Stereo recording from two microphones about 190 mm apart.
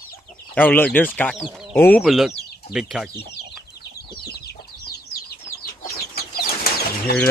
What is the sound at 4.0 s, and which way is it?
Chicken, 55° left (ahead or behind).